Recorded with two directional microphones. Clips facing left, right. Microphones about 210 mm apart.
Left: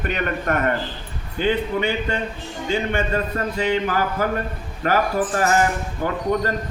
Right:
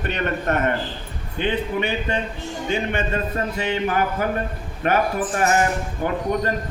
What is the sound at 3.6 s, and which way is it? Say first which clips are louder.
Speech: left 2 dB; 25° right (ahead or behind).